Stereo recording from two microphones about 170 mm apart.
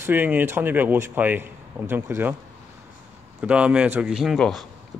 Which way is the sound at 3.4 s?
5° right (ahead or behind).